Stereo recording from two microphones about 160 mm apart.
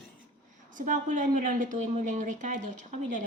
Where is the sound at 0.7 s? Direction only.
55° right (ahead or behind).